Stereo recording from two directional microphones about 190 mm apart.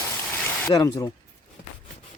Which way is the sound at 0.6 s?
15° left (ahead or behind).